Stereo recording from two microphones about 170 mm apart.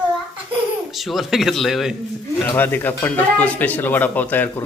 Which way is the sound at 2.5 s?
10° left (ahead or behind).